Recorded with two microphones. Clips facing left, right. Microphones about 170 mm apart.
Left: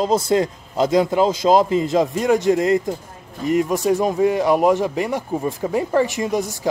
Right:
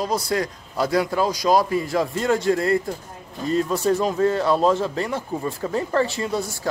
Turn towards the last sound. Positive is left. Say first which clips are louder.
# left 4 dB
turn(degrees=15)  # may be behind; listen again after turning